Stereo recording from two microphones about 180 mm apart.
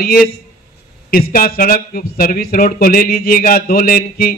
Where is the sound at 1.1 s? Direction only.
55° left (ahead or behind).